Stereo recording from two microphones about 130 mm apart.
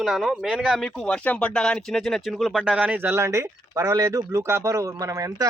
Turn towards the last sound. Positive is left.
turn(degrees=-25)  # may be behind; listen again after turning